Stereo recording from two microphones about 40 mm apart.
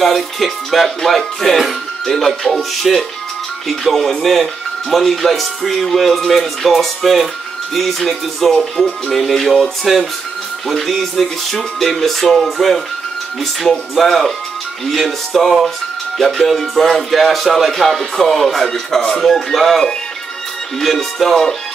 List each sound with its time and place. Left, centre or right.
0.0 s speech: centre
8.8 s speech: centre
9.1 s speech: centre